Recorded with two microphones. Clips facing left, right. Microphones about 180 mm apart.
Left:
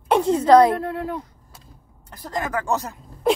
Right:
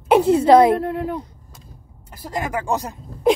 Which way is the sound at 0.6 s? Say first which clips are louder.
Right 2 dB; 20° right (ahead or behind).